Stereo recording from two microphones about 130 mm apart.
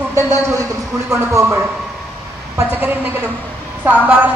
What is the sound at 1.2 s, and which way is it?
A man's voice, 20° right (ahead or behind).